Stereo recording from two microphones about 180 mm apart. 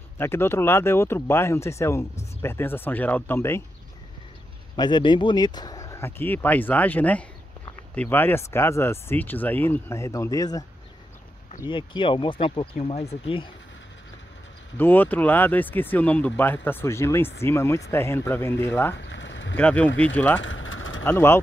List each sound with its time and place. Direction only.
0.2 s speech: 15° left (ahead or behind)
4.7 s speech: 25° left (ahead or behind)
11.7 s speech: 25° left (ahead or behind)
14.8 s speech: 10° left (ahead or behind)
18.9 s a sound: 85° left
19.5 s speech: 10° left (ahead or behind)
20.3 s a sound: 90° left
21.0 s speech: 15° left (ahead or behind)